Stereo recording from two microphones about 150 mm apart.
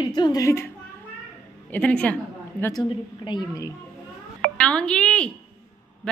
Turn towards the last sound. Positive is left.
turn(degrees=5)  # may be behind; listen again after turning